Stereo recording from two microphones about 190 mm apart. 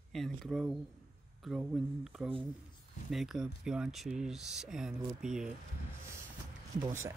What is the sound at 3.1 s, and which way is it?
Speech, centre (ahead or behind).